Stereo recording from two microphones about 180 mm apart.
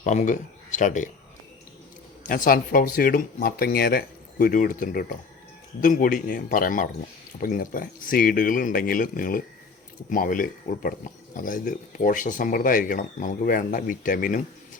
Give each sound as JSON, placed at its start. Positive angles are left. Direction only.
{"t": 0.0, "sound": "speech", "side_deg": 40}
{"t": 2.2, "sound": "speech", "side_deg": 50}